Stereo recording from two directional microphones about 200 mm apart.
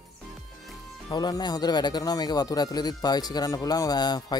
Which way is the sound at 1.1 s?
20° left (ahead or behind).